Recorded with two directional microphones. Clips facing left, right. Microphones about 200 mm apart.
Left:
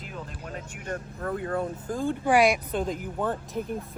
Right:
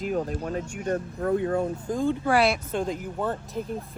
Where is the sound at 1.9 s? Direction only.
15° left (ahead or behind).